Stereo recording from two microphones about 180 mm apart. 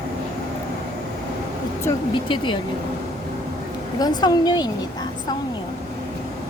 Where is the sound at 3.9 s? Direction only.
20° left (ahead or behind).